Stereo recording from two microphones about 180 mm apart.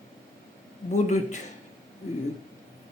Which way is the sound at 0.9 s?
40° left (ahead or behind).